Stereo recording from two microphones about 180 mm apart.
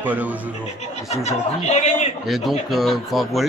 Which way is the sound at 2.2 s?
Centre (ahead or behind).